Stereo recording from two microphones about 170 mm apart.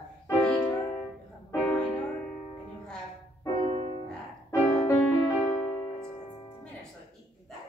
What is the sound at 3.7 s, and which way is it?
Music, 40° right (ahead or behind).